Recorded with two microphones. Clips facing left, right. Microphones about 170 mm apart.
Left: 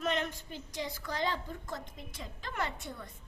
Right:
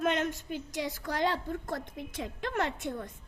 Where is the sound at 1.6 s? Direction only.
55° right (ahead or behind).